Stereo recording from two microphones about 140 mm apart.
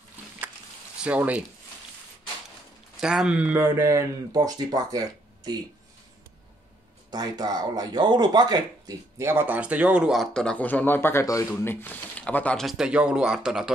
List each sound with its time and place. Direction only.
0.9 s speech: 10° right (ahead or behind)
3.0 s speech: 5° right (ahead or behind); by 5.6 s 30° right (ahead or behind)
7.1 s speech: 30° right (ahead or behind); by 12.6 s 10° left (ahead or behind)
12.6 s a man's voice: 5° right (ahead or behind)